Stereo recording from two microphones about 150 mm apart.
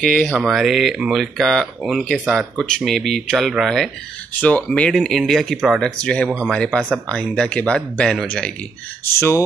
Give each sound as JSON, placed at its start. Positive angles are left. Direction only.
{"t": 0.0, "sound": "speech", "side_deg": 5}
{"t": 9.0, "sound": "speech", "side_deg": 20}